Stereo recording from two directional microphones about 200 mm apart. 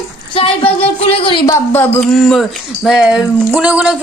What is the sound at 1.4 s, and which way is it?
Speech, 10° left (ahead or behind).